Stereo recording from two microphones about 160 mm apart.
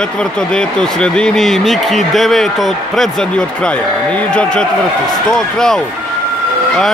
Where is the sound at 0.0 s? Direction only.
5° left (ahead or behind).